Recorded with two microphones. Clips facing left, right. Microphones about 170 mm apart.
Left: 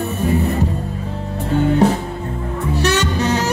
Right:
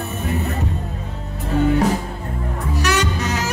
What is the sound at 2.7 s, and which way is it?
Music, 30° left (ahead or behind).